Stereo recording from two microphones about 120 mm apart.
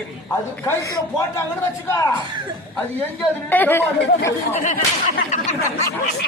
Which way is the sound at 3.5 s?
15° left (ahead or behind).